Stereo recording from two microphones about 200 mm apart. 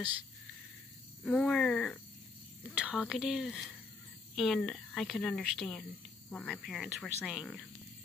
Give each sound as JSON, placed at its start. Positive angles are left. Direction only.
{"t": 1.2, "sound": "speech", "side_deg": 5}